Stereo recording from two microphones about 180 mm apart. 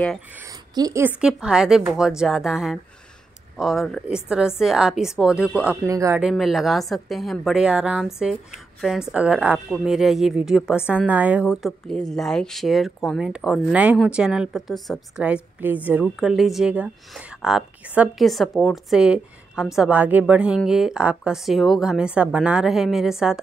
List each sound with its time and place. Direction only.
0.4 s a sound: 20° right (ahead or behind)
1.2 s speech: 5° right (ahead or behind)
5.9 s speech: 15° right (ahead or behind)
6.2 s speech: centre (ahead or behind)